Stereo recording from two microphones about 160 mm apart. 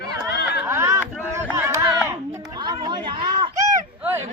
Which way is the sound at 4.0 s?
10° right (ahead or behind).